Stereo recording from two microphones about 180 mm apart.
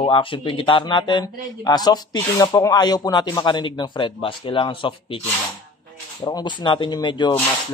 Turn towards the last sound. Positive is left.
turn(degrees=25)  # may be behind; listen again after turning